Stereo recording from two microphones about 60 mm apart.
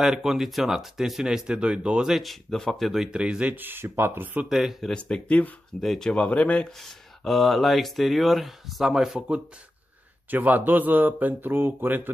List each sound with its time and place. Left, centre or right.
0.0 s speech: centre
2.2 s speech: centre
2.9 s speech: centre
3.5 s speech: right
4.5 s speech: centre
4.8 s speech: centre
5.8 s speech: centre
6.1 s speech: centre
6.8 s speech: centre
10.3 s speech: right